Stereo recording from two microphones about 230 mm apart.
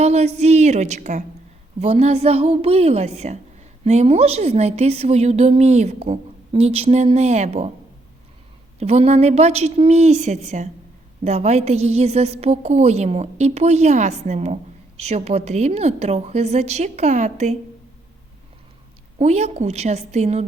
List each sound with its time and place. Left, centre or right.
0.0 s a woman's voice: right
8.8 s a woman's voice: right
19.2 s a woman's voice: right